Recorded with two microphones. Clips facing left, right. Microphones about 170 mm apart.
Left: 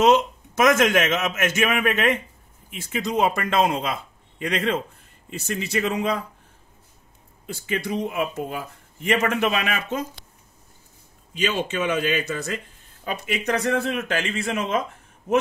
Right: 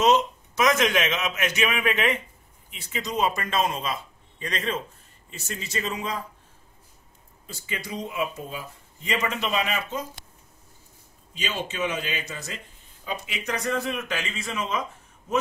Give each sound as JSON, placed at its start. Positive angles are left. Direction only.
{"t": 0.0, "sound": "a man's voice", "side_deg": 55}
{"t": 7.4, "sound": "speech", "side_deg": 60}
{"t": 11.3, "sound": "speech", "side_deg": 60}